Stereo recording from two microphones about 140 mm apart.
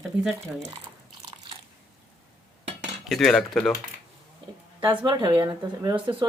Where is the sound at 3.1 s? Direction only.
Centre (ahead or behind).